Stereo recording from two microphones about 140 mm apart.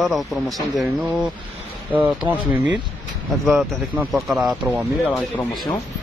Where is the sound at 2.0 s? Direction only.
10° right (ahead or behind).